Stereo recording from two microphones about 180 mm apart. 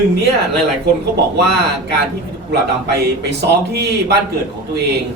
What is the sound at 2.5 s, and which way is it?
A man's voice, 70° right (ahead or behind).